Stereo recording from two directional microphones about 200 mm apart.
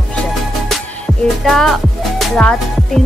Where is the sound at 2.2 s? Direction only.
5° left (ahead or behind).